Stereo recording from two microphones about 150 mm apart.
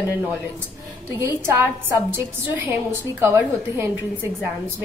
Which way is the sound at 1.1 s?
20° right (ahead or behind).